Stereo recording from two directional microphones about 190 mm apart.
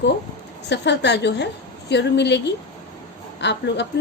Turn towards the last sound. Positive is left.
turn(degrees=65)  # may be behind; listen again after turning